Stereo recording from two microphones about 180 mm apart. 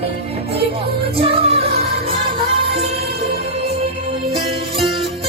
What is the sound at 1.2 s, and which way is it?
Music, 35° right (ahead or behind).